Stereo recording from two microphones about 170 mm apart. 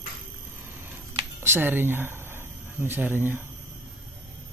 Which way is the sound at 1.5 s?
10° right (ahead or behind).